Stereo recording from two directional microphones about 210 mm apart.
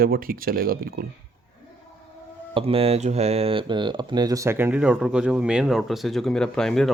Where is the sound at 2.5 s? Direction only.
25° right (ahead or behind).